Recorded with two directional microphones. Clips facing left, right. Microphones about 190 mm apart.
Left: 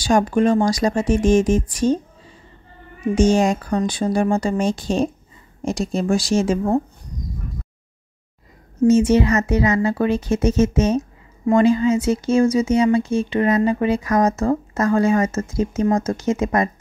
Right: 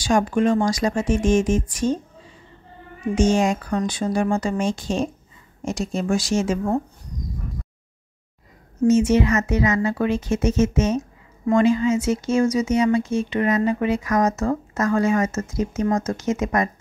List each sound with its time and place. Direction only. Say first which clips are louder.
0.0 s speech: left 2 dB; 40° left (ahead or behind)
3.2 s speech: left 2 dB; 35° left (ahead or behind)
8.8 s speech: left 2 dB; 35° left (ahead or behind)